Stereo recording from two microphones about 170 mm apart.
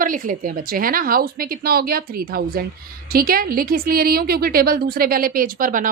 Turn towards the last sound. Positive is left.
turn(degrees=-55)  # may be behind; listen again after turning